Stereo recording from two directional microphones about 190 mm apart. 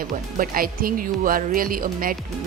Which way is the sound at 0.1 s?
50° right (ahead or behind).